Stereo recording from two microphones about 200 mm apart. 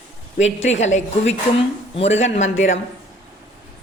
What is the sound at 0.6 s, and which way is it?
A woman's voice, 35° left (ahead or behind).